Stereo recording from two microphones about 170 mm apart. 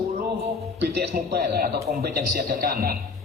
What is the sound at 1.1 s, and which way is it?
A man's voice, 65° right (ahead or behind).